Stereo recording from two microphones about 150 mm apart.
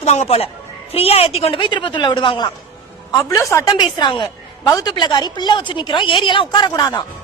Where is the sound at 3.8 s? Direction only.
30° left (ahead or behind).